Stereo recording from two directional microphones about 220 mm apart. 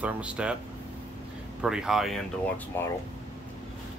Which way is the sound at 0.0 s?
5° right (ahead or behind).